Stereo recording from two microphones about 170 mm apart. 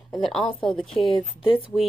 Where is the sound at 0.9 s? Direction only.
30° left (ahead or behind).